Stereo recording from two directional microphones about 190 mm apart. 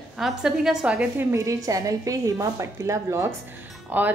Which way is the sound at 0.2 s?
Centre (ahead or behind).